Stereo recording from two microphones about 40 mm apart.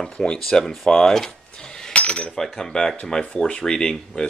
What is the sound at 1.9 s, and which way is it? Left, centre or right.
Cutlery, left.